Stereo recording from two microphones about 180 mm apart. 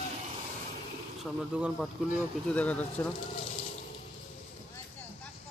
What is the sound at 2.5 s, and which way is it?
Speech, 5° left (ahead or behind).